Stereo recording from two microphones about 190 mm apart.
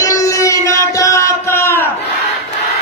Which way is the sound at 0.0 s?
20° left (ahead or behind).